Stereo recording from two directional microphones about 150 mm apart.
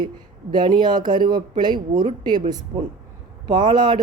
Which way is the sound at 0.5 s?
30° right (ahead or behind).